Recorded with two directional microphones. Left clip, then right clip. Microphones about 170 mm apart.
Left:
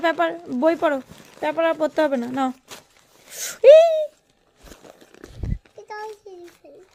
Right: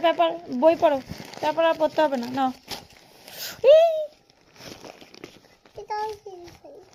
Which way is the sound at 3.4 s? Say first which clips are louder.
Left 5 dB; 60° left (ahead or behind).